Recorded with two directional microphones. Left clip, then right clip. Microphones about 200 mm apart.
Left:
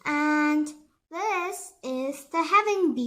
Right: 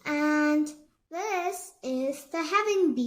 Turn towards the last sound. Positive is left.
turn(degrees=25)  # may be behind; listen again after turning